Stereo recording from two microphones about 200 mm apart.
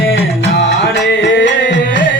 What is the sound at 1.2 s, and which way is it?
Music, 60° left (ahead or behind).